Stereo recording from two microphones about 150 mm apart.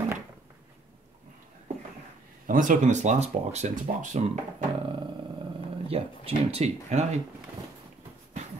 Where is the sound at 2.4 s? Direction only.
60° right (ahead or behind).